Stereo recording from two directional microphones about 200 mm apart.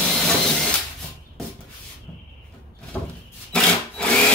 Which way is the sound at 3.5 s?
5° left (ahead or behind).